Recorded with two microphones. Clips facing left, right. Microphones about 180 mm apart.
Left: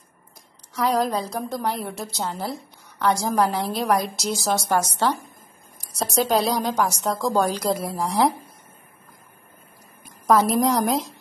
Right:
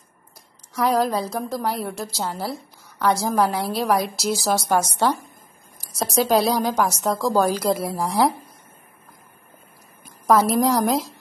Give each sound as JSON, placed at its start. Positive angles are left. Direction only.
{"t": 0.7, "sound": "a woman's voice", "side_deg": -5}
{"t": 5.9, "sound": "a woman's voice", "side_deg": 0}
{"t": 10.0, "sound": "a woman's voice", "side_deg": -5}